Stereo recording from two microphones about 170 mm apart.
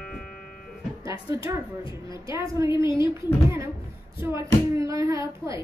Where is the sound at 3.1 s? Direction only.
15° right (ahead or behind).